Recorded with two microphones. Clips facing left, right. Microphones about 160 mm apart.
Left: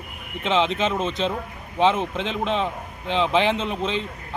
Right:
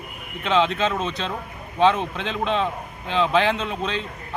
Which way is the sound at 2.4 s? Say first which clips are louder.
Right 3 dB; 15° left (ahead or behind).